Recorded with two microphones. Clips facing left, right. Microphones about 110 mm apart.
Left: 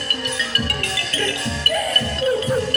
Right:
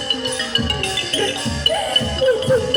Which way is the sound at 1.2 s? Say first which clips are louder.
Right 3 dB; 25° right (ahead or behind).